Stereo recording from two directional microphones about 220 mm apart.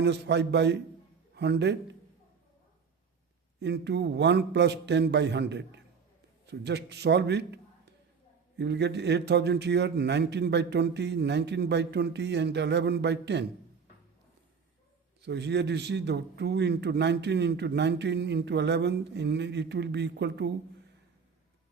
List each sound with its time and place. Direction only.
0.0 s a man's voice: 50° right (ahead or behind)
3.6 s a man's voice: 50° right (ahead or behind)
15.2 s a man's voice: 50° right (ahead or behind)